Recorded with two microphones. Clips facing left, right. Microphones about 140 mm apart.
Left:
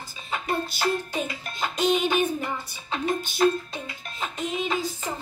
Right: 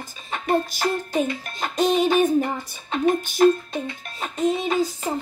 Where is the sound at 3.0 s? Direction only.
50° right (ahead or behind).